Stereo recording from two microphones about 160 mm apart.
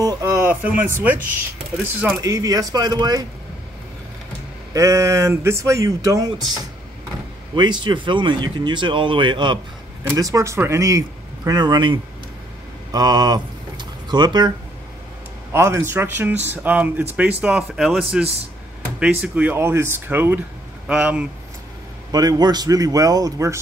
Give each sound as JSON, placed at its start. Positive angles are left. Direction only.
{"t": 0.0, "sound": "a sound", "side_deg": -20}
{"t": 2.2, "sound": "speech", "side_deg": -20}
{"t": 4.7, "sound": "speech", "side_deg": -20}
{"t": 12.9, "sound": "a sound", "side_deg": -25}
{"t": 15.5, "sound": "speech", "side_deg": -15}
{"t": 22.1, "sound": "speech", "side_deg": -25}